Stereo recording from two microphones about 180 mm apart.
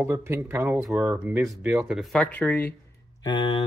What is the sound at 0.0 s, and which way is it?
Speech, 15° right (ahead or behind).